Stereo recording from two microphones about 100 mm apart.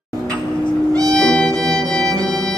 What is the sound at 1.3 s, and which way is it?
Music, 10° left (ahead or behind).